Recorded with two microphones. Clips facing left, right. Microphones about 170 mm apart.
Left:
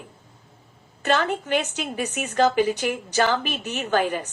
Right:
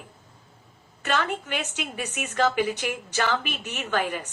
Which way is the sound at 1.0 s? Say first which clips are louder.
Left 4 dB; 35° left (ahead or behind).